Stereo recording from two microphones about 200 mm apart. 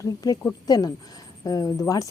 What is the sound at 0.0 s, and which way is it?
Speech, 15° left (ahead or behind).